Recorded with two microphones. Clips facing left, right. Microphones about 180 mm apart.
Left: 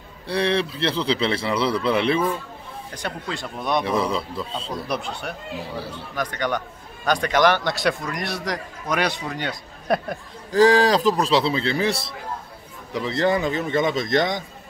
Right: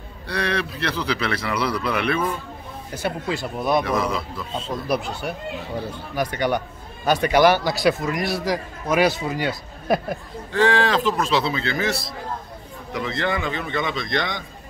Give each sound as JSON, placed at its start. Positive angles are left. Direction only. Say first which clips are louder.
{"t": 0.3, "sound": "speech", "louder": "left 3 dB", "side_deg": 30}
{"t": 2.9, "sound": "a man's voice", "louder": "right 5 dB", "side_deg": -5}
{"t": 3.8, "sound": "a man's voice", "louder": "even", "side_deg": 30}
{"t": 4.6, "sound": "a man's voice", "louder": "right 6 dB", "side_deg": 0}
{"t": 10.5, "sound": "a man's voice", "louder": "left 3 dB", "side_deg": 35}